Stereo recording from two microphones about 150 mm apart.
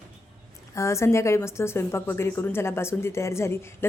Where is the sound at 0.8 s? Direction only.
20° left (ahead or behind).